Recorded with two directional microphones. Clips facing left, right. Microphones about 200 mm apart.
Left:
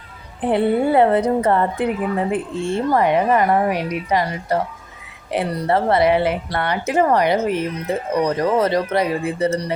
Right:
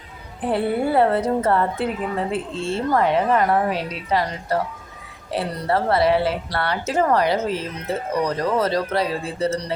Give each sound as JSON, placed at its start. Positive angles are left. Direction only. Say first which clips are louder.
{"t": 0.4, "sound": "a woman's voice", "louder": "left 4 dB", "side_deg": 20}